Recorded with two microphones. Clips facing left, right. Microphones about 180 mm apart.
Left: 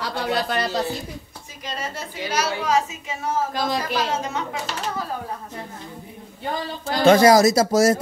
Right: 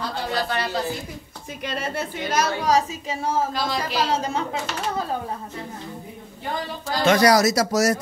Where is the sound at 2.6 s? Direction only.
35° right (ahead or behind).